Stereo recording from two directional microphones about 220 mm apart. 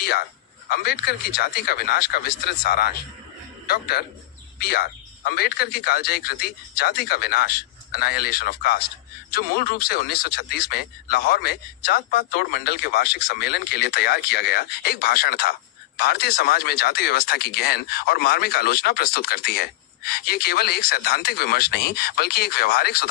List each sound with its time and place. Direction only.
0.0 s a man's voice: 45° left (ahead or behind)